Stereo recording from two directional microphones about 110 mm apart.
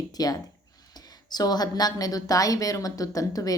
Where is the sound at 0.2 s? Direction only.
35° left (ahead or behind).